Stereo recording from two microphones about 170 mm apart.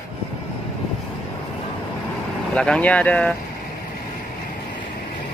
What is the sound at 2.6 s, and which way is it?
Speech, 5° left (ahead or behind).